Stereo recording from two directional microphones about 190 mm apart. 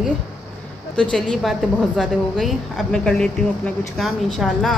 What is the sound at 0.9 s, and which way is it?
A woman's voice, 5° left (ahead or behind).